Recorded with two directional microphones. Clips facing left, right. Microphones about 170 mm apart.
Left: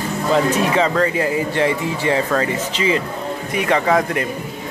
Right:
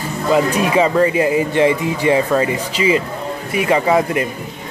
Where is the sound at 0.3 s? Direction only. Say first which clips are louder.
Right 2 dB; 10° right (ahead or behind).